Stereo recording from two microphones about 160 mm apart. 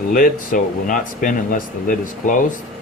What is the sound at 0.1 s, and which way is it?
Speech, 55° left (ahead or behind).